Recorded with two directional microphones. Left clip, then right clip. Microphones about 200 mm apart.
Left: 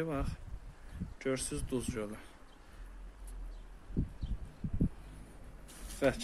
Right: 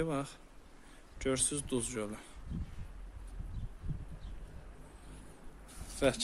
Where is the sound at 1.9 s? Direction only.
15° right (ahead or behind).